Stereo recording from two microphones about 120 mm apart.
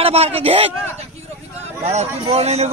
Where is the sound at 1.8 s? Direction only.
65° right (ahead or behind).